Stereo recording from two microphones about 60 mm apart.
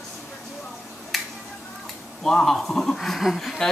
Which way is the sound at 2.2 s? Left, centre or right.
Centre.